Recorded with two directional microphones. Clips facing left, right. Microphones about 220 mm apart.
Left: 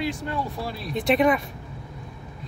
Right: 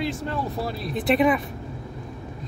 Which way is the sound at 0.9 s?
Centre (ahead or behind).